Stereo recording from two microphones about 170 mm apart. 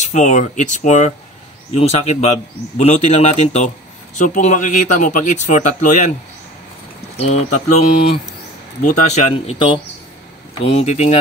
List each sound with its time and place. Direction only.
0.0 s speech: 45° left (ahead or behind)
7.2 s speech: 40° left (ahead or behind)